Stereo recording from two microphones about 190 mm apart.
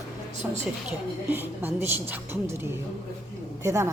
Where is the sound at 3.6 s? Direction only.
15° right (ahead or behind).